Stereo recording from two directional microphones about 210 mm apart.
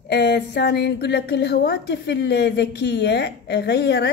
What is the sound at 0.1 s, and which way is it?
A woman's voice, 50° left (ahead or behind).